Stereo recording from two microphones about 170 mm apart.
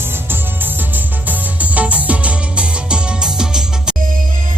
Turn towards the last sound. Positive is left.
turn(degrees=-5)  # may be behind; listen again after turning